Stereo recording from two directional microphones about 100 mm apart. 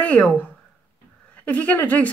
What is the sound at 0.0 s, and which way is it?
A woman's voice, 10° left (ahead or behind).